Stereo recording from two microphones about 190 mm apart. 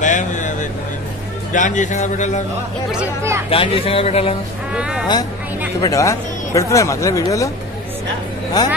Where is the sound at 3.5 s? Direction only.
30° left (ahead or behind).